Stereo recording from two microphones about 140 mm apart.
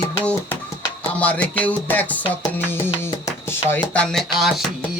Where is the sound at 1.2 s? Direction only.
10° left (ahead or behind).